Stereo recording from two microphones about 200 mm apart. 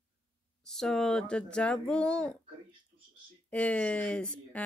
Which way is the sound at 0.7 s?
Centre (ahead or behind).